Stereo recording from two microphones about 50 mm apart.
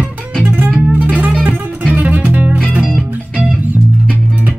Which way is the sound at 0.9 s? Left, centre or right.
Right.